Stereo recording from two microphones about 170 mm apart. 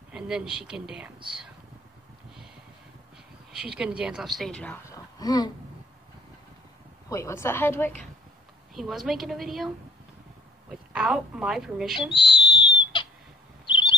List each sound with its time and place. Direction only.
0.1 s speech: 5° right (ahead or behind)
3.5 s speech: 5° right (ahead or behind)
4.8 s a sound: 20° left (ahead or behind)
7.1 s a woman's voice: 15° left (ahead or behind)
8.7 s speech: centre (ahead or behind)
10.7 s speech: 5° right (ahead or behind)
12.2 s whistle: 30° left (ahead or behind)
13.7 s owl: 25° left (ahead or behind)